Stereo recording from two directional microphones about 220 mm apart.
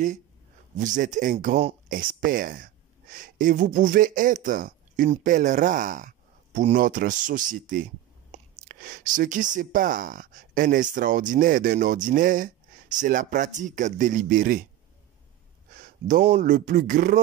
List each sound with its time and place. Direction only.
0.7 s speech: 35° right (ahead or behind)
15.7 s speech: 40° right (ahead or behind)